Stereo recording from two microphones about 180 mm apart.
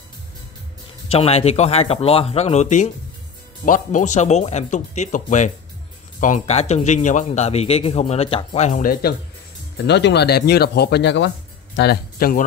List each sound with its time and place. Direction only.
1.0 s speech: 35° left (ahead or behind)
9.8 s speech: 70° left (ahead or behind); by 12.4 s 50° left (ahead or behind)